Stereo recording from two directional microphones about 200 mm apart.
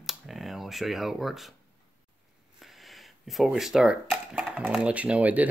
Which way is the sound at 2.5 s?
Centre (ahead or behind).